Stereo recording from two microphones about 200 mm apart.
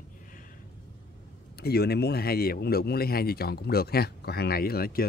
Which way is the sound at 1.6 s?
55° left (ahead or behind).